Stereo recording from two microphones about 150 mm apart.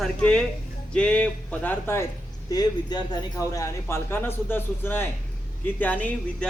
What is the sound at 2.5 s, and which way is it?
Speech, 25° left (ahead or behind).